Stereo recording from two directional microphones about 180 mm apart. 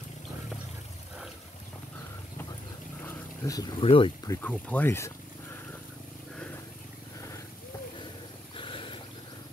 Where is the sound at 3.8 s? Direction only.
30° left (ahead or behind).